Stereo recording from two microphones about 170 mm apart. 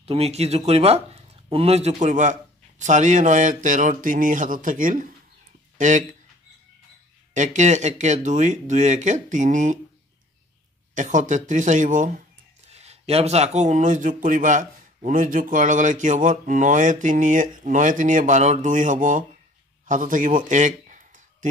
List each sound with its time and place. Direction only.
0.0 s speech: 35° right (ahead or behind)
7.3 s speech: 45° right (ahead or behind)
11.0 s speech: 50° right (ahead or behind)
19.9 s a sound: 50° right (ahead or behind)